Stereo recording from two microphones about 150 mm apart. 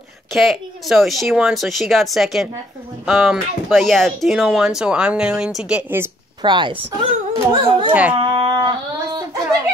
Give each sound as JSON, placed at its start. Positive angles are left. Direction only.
{"t": 0.3, "sound": "speech", "side_deg": 0}
{"t": 6.4, "sound": "speech", "side_deg": -30}
{"t": 7.9, "sound": "speech", "side_deg": -10}
{"t": 8.2, "sound": "a sound", "side_deg": -35}
{"t": 8.5, "sound": "singing", "side_deg": -30}